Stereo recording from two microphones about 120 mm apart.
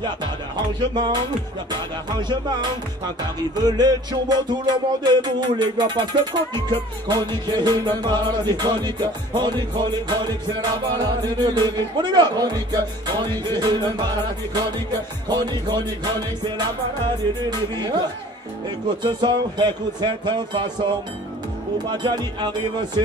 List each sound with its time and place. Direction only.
0.7 s music: 40° right (ahead or behind)
19.0 s music: 40° right (ahead or behind)
21.8 s music: 40° right (ahead or behind)